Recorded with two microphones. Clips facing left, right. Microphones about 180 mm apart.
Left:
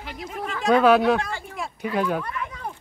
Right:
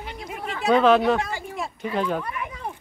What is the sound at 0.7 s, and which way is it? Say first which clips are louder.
Speech: left 1 dB; 5° left (ahead or behind).